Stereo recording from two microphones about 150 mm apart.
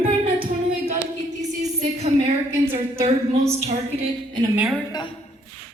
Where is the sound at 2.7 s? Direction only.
45° right (ahead or behind).